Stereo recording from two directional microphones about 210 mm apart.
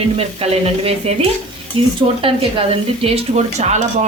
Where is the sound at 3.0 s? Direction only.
30° right (ahead or behind).